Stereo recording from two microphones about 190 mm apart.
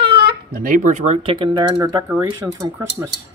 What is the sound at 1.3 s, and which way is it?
Speech, 25° right (ahead or behind).